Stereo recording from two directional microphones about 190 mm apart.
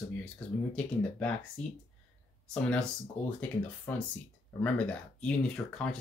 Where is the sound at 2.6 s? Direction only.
5° left (ahead or behind).